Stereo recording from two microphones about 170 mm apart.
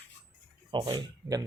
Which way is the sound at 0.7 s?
30° right (ahead or behind).